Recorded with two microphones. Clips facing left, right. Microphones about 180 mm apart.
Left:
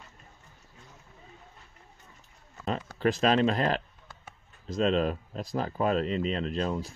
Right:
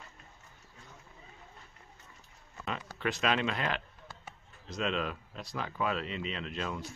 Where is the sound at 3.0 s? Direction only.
35° left (ahead or behind).